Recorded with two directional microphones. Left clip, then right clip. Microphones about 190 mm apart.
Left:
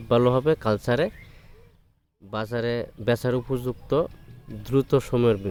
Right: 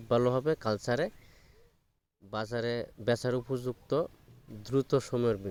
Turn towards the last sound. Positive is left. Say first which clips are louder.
# left 8 dB
turn(degrees=-25)  # may be behind; listen again after turning